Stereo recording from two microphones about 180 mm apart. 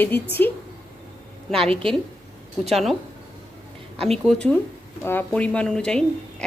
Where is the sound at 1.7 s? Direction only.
30° right (ahead or behind).